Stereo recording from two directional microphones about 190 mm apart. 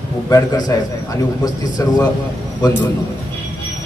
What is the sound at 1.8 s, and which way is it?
Speech, 15° left (ahead or behind).